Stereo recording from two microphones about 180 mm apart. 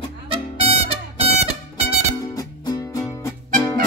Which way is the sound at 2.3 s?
20° left (ahead or behind).